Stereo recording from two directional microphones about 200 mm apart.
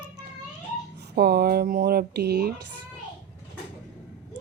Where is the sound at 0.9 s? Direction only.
55° right (ahead or behind).